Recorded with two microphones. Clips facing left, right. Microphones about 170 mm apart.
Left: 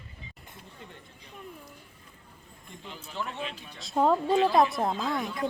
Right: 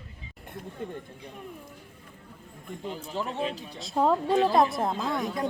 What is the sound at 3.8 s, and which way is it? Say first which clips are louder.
A woman's voice: even; centre (ahead or behind).